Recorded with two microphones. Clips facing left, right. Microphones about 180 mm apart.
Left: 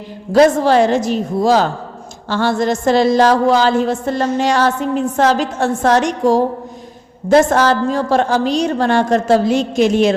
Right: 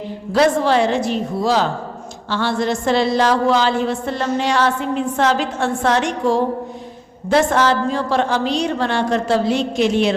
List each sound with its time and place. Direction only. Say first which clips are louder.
0.3 s a woman's voice: left 4 dB; 45° left (ahead or behind)